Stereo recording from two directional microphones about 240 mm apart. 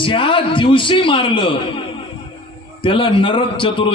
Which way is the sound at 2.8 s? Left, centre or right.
Left.